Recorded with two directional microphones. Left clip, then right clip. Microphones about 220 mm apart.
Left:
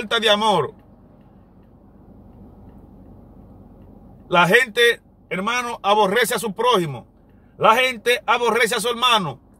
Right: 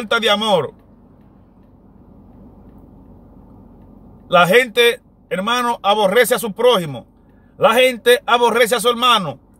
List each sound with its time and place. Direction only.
0.1 s a man's voice: 10° right (ahead or behind)
4.4 s a man's voice: 10° right (ahead or behind)